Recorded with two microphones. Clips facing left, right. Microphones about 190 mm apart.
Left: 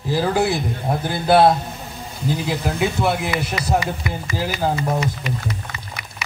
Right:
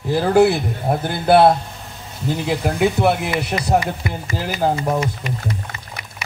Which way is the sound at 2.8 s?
55° right (ahead or behind).